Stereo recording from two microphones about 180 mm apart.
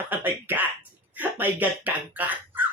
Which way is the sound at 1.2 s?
10° right (ahead or behind).